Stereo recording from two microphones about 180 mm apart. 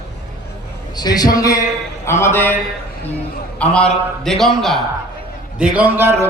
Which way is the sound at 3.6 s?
5° left (ahead or behind).